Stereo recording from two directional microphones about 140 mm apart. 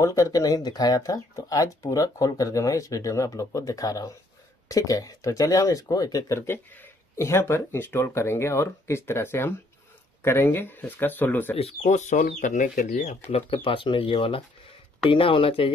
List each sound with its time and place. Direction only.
0.0 s speech: 25° left (ahead or behind)
11.5 s speech: 50° left (ahead or behind)